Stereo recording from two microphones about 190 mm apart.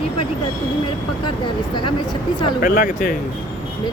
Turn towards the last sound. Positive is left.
turn(degrees=50)  # may be behind; listen again after turning